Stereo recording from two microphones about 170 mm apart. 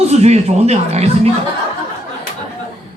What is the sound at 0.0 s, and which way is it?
Speech, 40° right (ahead or behind).